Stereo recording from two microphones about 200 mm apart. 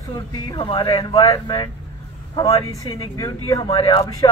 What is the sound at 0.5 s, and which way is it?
Speech, 25° left (ahead or behind).